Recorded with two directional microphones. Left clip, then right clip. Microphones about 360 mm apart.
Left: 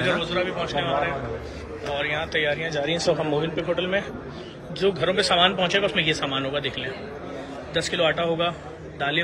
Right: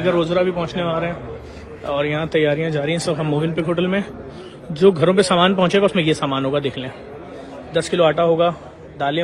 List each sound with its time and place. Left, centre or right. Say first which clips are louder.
0.0 s a man's voice: right 6 dB; centre